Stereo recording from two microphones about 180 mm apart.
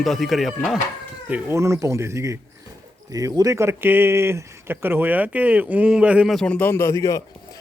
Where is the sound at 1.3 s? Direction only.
15° right (ahead or behind).